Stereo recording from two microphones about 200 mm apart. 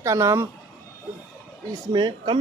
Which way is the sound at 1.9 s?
20° right (ahead or behind).